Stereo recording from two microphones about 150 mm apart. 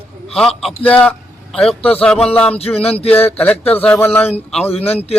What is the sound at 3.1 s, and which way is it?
Speech, 10° left (ahead or behind).